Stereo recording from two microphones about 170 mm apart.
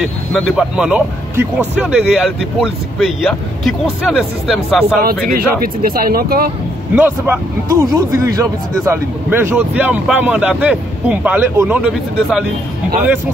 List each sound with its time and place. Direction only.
0.0 s speech: centre (ahead or behind)
5.0 s speech: 60° right (ahead or behind)
7.0 s speech: 10° right (ahead or behind)